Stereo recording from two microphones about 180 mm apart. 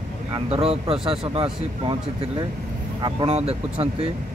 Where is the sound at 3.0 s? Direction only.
25° right (ahead or behind).